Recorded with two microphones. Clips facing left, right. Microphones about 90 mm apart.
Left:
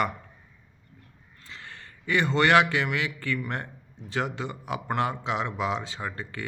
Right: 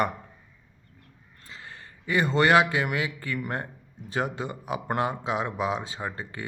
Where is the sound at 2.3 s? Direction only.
35° right (ahead or behind).